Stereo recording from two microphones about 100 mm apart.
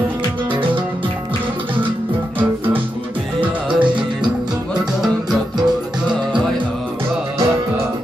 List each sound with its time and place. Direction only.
3.3 s music: 55° right (ahead or behind)